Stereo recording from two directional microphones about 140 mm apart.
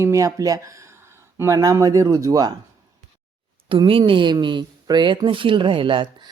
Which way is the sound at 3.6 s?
35° right (ahead or behind).